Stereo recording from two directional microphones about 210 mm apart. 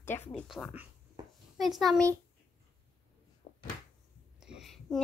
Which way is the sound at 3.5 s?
35° left (ahead or behind).